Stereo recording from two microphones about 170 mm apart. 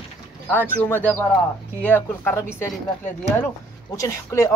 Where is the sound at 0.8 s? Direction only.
10° left (ahead or behind).